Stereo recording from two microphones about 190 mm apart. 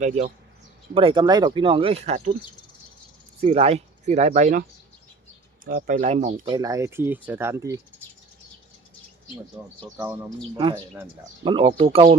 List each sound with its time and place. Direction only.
0.0 s speech: 40° right (ahead or behind)
0.9 s speech: 25° right (ahead or behind)
3.4 s speech: 30° right (ahead or behind)
5.6 s speech: 50° right (ahead or behind); by 7.8 s 15° right (ahead or behind)
9.6 s speech: 5° right (ahead or behind)
11.4 s speech: 30° right (ahead or behind)